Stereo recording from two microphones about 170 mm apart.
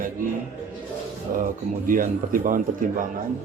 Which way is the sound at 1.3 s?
50° right (ahead or behind).